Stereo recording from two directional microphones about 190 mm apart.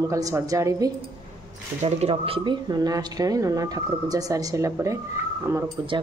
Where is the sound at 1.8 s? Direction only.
30° right (ahead or behind); by 5.0 s 15° right (ahead or behind).